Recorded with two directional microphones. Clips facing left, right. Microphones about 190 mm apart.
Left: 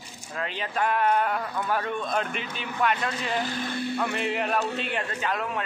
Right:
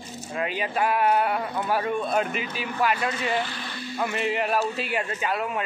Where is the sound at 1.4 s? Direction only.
20° right (ahead or behind).